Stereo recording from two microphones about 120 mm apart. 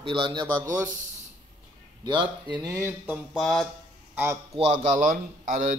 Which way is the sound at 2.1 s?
40° right (ahead or behind).